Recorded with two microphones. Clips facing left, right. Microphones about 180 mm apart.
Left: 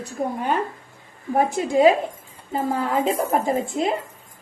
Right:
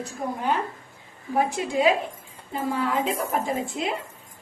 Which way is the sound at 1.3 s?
45° left (ahead or behind).